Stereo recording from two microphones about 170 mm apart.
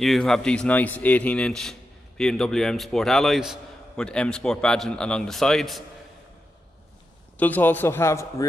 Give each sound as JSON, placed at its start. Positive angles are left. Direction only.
{"t": 0.0, "sound": "a man's voice", "side_deg": 0}
{"t": 7.3, "sound": "a man's voice", "side_deg": 10}